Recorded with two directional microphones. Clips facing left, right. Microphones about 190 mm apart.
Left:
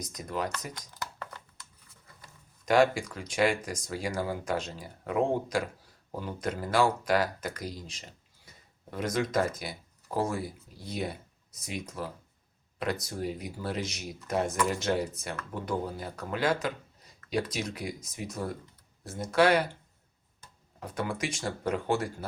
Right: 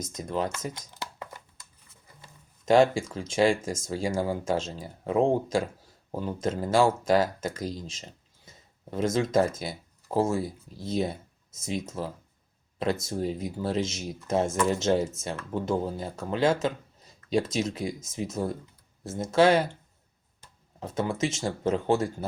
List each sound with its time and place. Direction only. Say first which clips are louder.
0.0 s speech: right 4 dB; 25° right (ahead or behind)
0.6 s a sound: right 4 dB; 25° right (ahead or behind)
2.2 s speech: right 6 dB; 25° right (ahead or behind)
20.7 s speech: right 4 dB; 25° right (ahead or behind)